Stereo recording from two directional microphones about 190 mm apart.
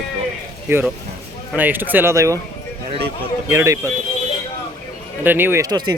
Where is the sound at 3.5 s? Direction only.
15° right (ahead or behind).